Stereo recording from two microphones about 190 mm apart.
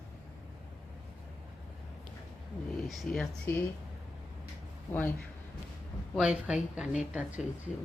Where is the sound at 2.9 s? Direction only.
Centre (ahead or behind).